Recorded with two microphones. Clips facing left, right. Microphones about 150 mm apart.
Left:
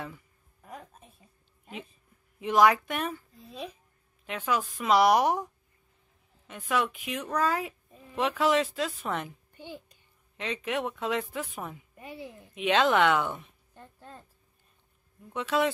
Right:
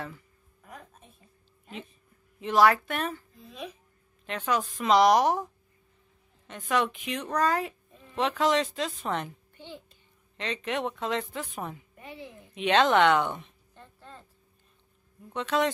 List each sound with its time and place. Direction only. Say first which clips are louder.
2.4 s a child's voice: even; 15° left (ahead or behind)
3.4 s speech: left 1 dB; 30° left (ahead or behind)
4.3 s a child's voice: right 1 dB; 10° left (ahead or behind)
15.3 s a child's voice: even; 10° left (ahead or behind)